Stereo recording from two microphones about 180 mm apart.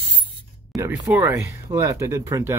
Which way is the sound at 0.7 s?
15° right (ahead or behind).